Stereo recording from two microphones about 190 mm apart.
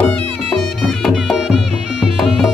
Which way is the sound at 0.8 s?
Centre (ahead or behind).